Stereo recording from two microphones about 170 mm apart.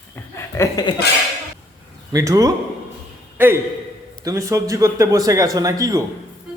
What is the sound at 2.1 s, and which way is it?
A man's voice, 20° right (ahead or behind).